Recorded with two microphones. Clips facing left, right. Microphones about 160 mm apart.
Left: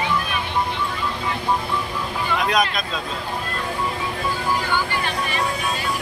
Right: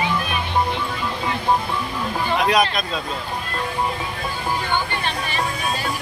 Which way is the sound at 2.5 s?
Centre (ahead or behind).